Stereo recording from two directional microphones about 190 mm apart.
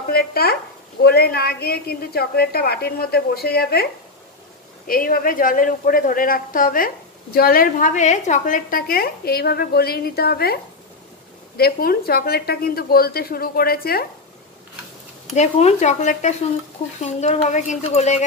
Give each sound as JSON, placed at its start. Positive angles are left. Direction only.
{"t": 0.1, "sound": "a woman's voice", "side_deg": 55}
{"t": 15.3, "sound": "speech", "side_deg": 35}